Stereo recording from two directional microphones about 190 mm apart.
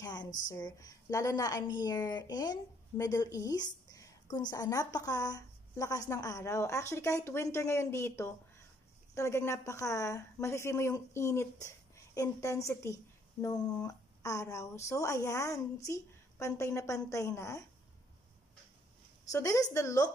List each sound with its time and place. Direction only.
0.0 s a sound: 20° left (ahead or behind)
0.5 s a woman's voice: 20° left (ahead or behind)
19.3 s a woman's voice: 15° left (ahead or behind)